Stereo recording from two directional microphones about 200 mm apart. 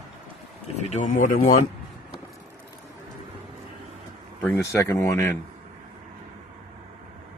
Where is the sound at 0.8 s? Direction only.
40° left (ahead or behind).